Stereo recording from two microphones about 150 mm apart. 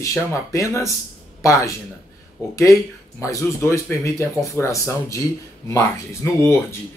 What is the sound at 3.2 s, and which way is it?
Speech, 20° left (ahead or behind).